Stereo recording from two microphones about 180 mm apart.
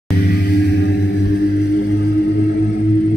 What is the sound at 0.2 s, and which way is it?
Music, 60° left (ahead or behind).